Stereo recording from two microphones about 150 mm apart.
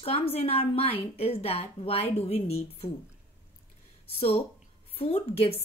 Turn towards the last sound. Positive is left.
turn(degrees=40)  # may be behind; listen again after turning